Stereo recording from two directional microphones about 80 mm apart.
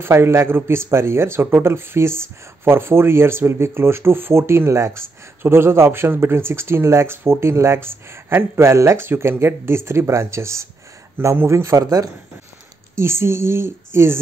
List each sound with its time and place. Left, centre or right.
0.0 s speech: right
11.8 s speech: right
12.9 s speech: right